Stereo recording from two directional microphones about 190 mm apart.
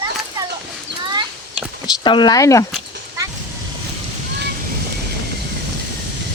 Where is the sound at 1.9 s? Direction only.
25° left (ahead or behind).